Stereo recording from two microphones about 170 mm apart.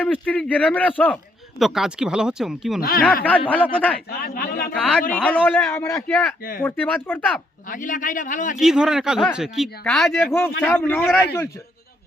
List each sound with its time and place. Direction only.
0.0 s speech: 10° left (ahead or behind)
1.5 s speech: centre (ahead or behind)
3.2 s speech: 10° left (ahead or behind)
4.1 s a man's voice: 60° left (ahead or behind)
4.7 s speech: 5° left (ahead or behind)
7.7 s a man's voice: 50° left (ahead or behind)
8.5 s speech: 5° right (ahead or behind)
10.7 s speech: 15° left (ahead or behind)